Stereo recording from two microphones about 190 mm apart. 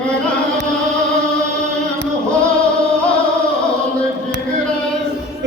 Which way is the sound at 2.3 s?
5° left (ahead or behind).